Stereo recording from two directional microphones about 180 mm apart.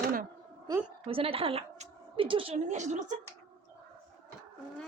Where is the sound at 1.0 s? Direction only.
30° right (ahead or behind).